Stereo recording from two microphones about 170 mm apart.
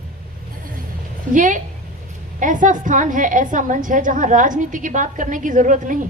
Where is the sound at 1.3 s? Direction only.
50° right (ahead or behind).